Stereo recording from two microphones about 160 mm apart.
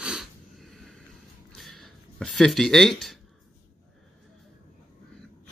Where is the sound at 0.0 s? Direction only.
5° right (ahead or behind).